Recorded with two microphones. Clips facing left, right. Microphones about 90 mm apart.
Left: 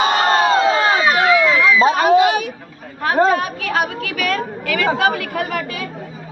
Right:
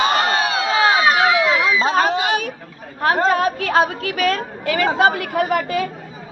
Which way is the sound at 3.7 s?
30° right (ahead or behind).